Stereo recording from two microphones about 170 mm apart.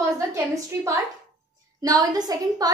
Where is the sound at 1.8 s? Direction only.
20° right (ahead or behind).